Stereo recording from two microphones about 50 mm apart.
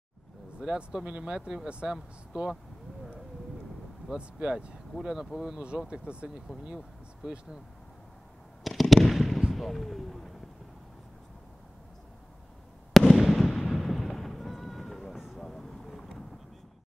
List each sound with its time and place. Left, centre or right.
0.6 s speech: centre
4.1 s speech: centre
5.0 s speech: centre
5.9 s speech: right
8.6 s fireworks: centre
9.5 s artillery fire: centre
12.9 s fireworks: centre
13.6 s artillery fire: centre
15.3 s vehicle: centre